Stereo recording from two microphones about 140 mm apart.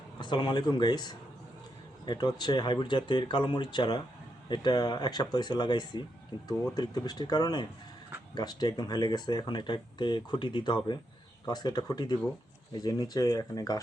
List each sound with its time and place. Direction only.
0.2 s speech: 35° left (ahead or behind)